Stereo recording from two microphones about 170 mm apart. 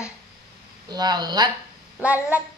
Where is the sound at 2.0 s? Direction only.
10° right (ahead or behind).